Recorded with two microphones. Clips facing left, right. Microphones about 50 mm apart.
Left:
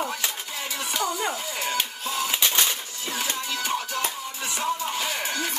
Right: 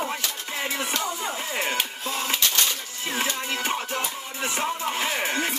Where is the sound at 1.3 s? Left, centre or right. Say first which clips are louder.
Right 2 dB; right.